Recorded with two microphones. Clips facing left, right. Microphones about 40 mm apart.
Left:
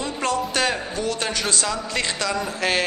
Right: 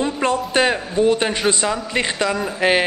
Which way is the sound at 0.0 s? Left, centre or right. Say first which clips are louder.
Right 4 dB; right.